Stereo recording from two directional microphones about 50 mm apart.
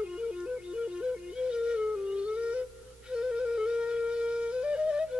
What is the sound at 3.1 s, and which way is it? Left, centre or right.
Flute, centre.